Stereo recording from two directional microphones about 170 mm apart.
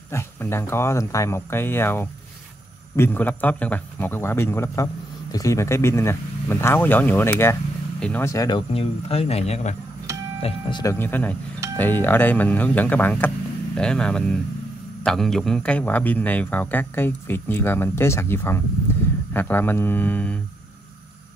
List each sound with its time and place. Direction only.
0.1 s speech: 15° left (ahead or behind); by 9.8 s 40° left (ahead or behind)
10.4 s speech: 25° left (ahead or behind); by 20.3 s 10° left (ahead or behind)